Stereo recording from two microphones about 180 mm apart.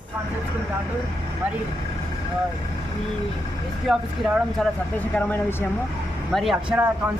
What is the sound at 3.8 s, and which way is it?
Speech, centre (ahead or behind).